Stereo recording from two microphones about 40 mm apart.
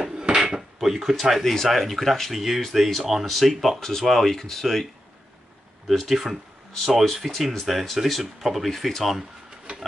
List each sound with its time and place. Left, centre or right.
0.0 s dishes: centre
0.7 s speech: centre
1.3 s speech: centre
5.9 s speech: centre